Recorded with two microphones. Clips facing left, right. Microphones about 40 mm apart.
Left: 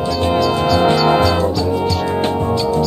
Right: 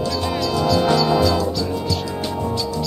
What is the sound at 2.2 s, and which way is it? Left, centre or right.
Music, left.